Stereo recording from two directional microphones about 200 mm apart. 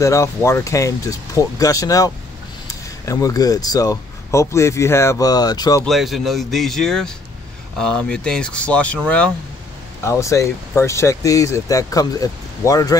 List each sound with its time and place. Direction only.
0.0 s speech: 15° left (ahead or behind)
5.9 s speech: centre (ahead or behind); by 12.9 s 15° left (ahead or behind)